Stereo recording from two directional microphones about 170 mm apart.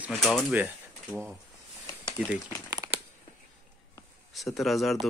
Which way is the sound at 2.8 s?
20° right (ahead or behind).